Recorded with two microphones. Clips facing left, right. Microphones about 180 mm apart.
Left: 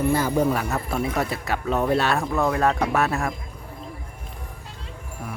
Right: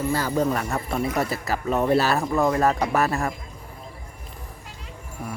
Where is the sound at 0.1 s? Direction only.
15° left (ahead or behind).